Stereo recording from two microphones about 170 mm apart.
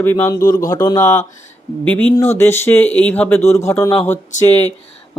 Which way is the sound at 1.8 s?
10° left (ahead or behind).